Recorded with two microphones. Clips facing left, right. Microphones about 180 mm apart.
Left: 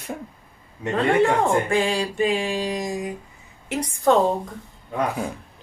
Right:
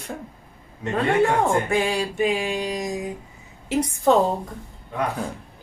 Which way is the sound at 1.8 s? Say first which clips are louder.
Even; 5° right (ahead or behind).